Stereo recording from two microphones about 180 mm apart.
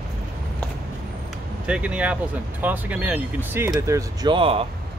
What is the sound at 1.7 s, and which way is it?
Speech, 5° right (ahead or behind).